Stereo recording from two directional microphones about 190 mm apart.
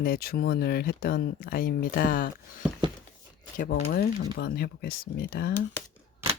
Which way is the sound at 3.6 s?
45° left (ahead or behind).